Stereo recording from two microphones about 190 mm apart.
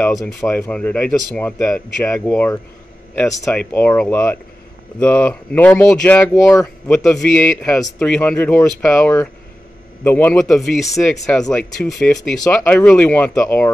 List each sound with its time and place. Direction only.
0.0 s a man's voice: centre (ahead or behind)